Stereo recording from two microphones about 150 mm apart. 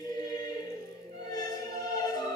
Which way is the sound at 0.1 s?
25° left (ahead or behind).